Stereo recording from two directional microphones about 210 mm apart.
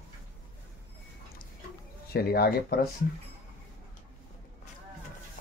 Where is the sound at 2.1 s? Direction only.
45° left (ahead or behind).